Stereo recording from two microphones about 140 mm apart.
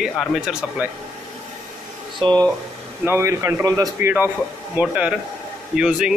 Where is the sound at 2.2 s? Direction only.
35° right (ahead or behind).